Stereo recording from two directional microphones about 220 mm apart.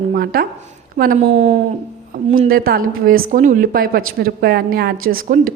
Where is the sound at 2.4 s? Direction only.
40° right (ahead or behind).